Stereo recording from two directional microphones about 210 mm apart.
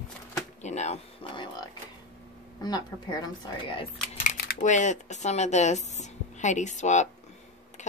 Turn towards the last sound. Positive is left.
turn(degrees=35)  # may be behind; listen again after turning